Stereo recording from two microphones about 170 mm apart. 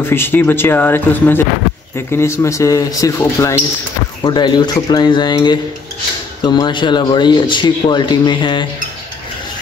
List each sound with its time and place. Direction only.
0.0 s speech: 10° left (ahead or behind)
4.2 s speech: 25° left (ahead or behind)